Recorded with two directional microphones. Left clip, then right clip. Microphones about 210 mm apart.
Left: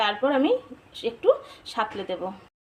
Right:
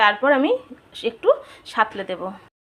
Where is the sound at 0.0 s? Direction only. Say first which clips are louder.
Right 6 dB; 15° right (ahead or behind).